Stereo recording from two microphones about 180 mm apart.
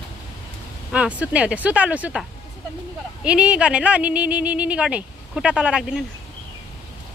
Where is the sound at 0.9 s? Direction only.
5° right (ahead or behind).